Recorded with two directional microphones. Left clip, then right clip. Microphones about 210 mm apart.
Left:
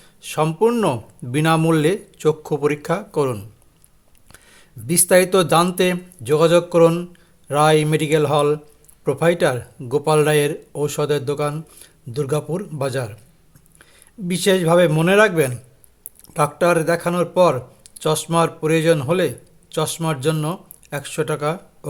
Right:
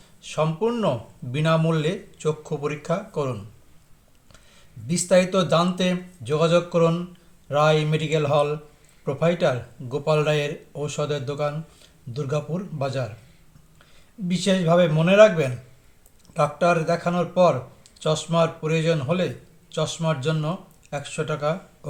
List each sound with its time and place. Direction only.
0.2 s speech: 50° left (ahead or behind)
14.3 s speech: 50° left (ahead or behind)